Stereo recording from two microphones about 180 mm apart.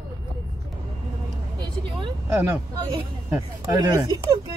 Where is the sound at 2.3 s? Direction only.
15° right (ahead or behind).